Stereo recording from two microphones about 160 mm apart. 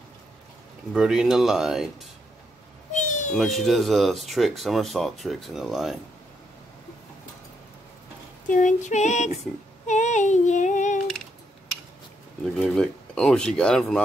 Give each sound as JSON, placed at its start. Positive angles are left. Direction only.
{"t": 0.9, "sound": "speech", "side_deg": -5}
{"t": 2.9, "sound": "a sound", "side_deg": 50}
{"t": 3.3, "sound": "speech", "side_deg": 0}
{"t": 8.5, "sound": "child singing", "side_deg": 50}
{"t": 12.5, "sound": "speech", "side_deg": 5}